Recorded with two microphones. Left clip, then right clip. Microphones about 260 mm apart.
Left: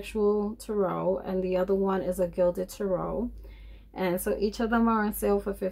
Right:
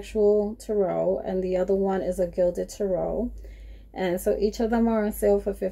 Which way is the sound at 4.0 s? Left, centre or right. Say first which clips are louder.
Right 4 dB; centre.